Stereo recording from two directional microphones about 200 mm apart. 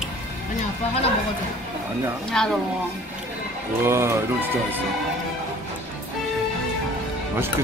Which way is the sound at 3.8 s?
15° right (ahead or behind).